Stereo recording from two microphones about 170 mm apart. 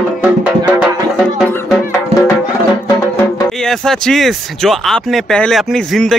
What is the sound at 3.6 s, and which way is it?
Speech, 5° left (ahead or behind).